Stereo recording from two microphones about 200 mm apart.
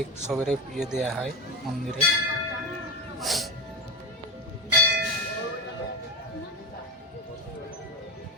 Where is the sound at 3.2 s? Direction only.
Centre (ahead or behind).